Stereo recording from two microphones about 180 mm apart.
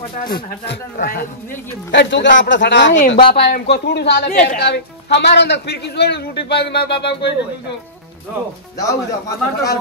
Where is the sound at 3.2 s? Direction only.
65° left (ahead or behind).